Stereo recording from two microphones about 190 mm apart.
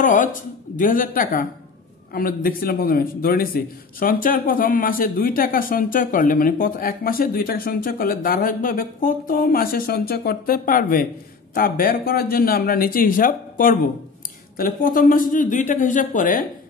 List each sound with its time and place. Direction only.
0.0 s a man's voice: 45° left (ahead or behind)